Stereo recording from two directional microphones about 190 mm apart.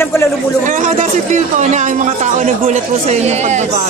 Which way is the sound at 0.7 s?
40° right (ahead or behind).